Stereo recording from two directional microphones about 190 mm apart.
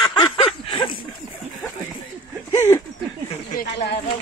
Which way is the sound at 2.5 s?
15° left (ahead or behind).